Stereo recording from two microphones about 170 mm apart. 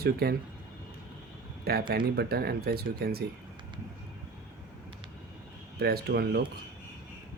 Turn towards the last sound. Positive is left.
turn(degrees=-65)  # may be behind; listen again after turning